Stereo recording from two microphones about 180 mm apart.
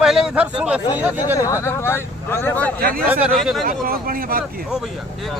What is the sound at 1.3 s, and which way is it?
Speech, 15° left (ahead or behind).